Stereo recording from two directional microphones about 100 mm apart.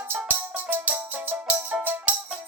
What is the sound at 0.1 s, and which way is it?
Music, 20° right (ahead or behind).